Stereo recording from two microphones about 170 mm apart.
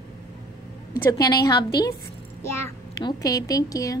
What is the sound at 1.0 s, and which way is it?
A woman's voice, 20° left (ahead or behind).